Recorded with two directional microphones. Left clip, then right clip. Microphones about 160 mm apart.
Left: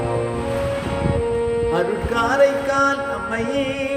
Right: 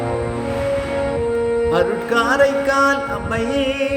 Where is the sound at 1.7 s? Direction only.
35° right (ahead or behind).